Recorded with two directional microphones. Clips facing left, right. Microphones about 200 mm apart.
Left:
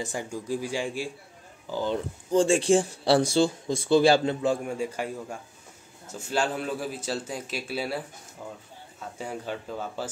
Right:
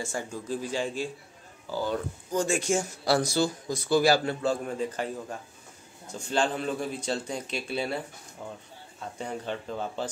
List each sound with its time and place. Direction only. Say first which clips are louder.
0.0 s speech: left 1 dB; 15° left (ahead or behind)
2.3 s speech: left 6 dB; 30° left (ahead or behind); by 8.0 s 5° left (ahead or behind)
9.2 s speech: even; 5° left (ahead or behind)